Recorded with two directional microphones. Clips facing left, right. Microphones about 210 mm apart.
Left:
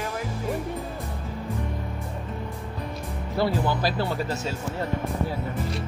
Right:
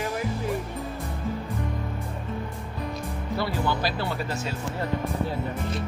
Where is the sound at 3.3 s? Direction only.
45° left (ahead or behind).